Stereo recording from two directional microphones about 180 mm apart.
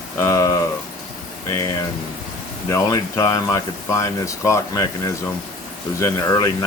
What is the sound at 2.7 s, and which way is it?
Speech, 15° left (ahead or behind).